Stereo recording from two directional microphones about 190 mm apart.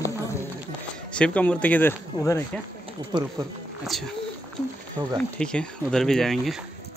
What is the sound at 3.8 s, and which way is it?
Speech, centre (ahead or behind).